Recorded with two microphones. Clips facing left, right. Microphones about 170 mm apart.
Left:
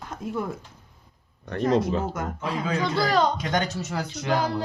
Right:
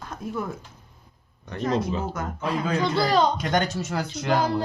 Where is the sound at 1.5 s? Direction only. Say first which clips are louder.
Left 3 dB; 55° left (ahead or behind).